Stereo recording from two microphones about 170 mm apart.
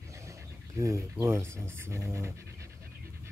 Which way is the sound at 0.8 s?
15° right (ahead or behind).